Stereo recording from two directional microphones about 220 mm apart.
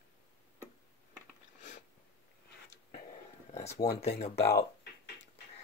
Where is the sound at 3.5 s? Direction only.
30° left (ahead or behind).